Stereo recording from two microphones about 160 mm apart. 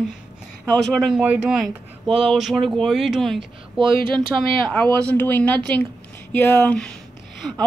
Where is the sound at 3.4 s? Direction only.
30° right (ahead or behind).